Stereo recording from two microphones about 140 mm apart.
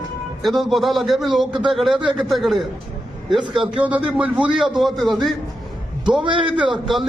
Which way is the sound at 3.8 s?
10° right (ahead or behind).